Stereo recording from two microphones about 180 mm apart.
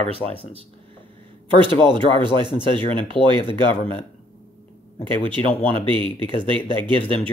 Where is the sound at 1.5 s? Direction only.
25° right (ahead or behind).